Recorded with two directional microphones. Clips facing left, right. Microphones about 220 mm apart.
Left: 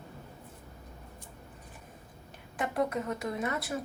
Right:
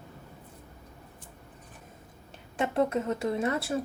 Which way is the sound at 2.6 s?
25° right (ahead or behind).